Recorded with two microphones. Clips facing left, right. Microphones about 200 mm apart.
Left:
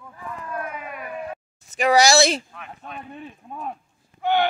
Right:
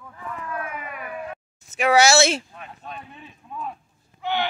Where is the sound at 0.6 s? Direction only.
5° right (ahead or behind).